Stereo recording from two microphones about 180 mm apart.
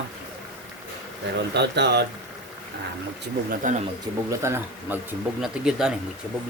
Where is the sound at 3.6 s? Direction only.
45° right (ahead or behind).